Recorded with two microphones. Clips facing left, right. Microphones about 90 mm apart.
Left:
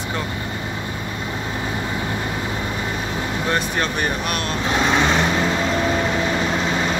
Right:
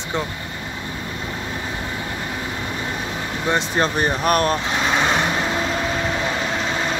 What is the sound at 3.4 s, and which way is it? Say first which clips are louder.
Speech: right 4 dB; 25° right (ahead or behind).